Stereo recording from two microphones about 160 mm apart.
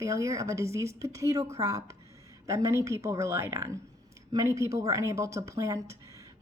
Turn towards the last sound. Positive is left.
turn(degrees=-20)  # may be behind; listen again after turning